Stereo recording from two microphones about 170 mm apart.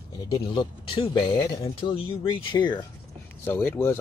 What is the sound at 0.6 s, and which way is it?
Speech, 30° left (ahead or behind).